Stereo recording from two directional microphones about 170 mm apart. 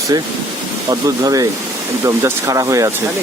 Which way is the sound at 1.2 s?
20° right (ahead or behind).